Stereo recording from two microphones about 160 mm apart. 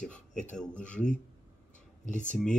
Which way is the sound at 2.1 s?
50° left (ahead or behind).